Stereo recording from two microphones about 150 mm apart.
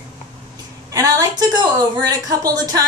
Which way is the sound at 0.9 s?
25° right (ahead or behind).